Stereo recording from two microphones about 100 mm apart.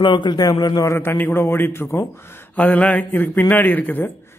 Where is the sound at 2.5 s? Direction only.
15° left (ahead or behind).